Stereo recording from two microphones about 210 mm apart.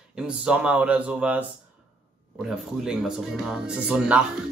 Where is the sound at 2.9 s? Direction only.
5° right (ahead or behind).